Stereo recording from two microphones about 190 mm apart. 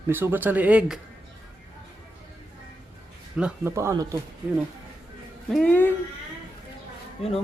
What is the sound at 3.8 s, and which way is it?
Speech, 15° right (ahead or behind).